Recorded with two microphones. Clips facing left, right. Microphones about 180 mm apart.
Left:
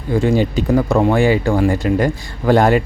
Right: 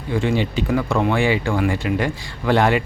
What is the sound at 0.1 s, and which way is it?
Speech, 40° left (ahead or behind).